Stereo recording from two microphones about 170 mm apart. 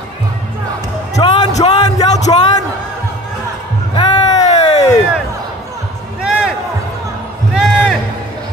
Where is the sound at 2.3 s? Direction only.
30° left (ahead or behind).